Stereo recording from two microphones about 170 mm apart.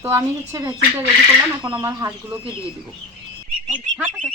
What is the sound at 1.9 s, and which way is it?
Speech, 20° right (ahead or behind).